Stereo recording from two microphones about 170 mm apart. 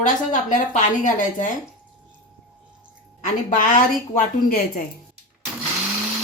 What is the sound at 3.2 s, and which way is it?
A woman's voice, 50° left (ahead or behind).